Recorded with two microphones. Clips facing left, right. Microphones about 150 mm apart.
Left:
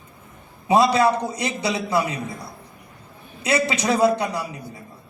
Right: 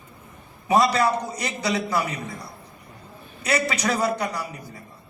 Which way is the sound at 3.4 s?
25° left (ahead or behind).